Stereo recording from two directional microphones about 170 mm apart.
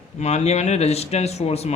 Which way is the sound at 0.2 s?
40° left (ahead or behind).